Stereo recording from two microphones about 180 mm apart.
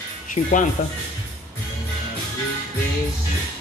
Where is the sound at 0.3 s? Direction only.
45° left (ahead or behind).